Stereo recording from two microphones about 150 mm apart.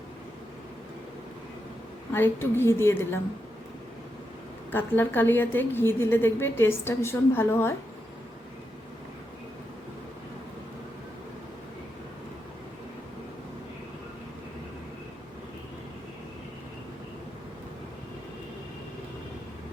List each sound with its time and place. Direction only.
2.1 s a woman's voice: 15° left (ahead or behind)
4.7 s a woman's voice: 15° left (ahead or behind)